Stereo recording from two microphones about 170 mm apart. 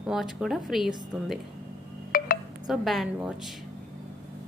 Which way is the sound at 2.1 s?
55° left (ahead or behind).